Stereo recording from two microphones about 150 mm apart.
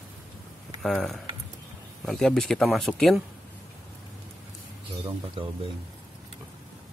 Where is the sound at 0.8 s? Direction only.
Centre (ahead or behind).